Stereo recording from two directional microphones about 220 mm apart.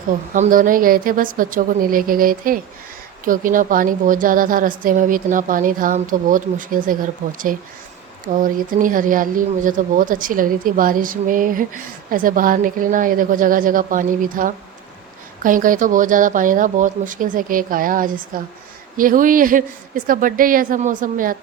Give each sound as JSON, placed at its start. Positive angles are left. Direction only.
{"t": 0.3, "sound": "speech", "side_deg": -35}
{"t": 8.3, "sound": "speech", "side_deg": -40}